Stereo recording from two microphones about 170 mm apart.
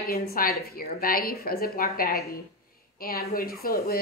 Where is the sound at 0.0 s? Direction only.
60° left (ahead or behind).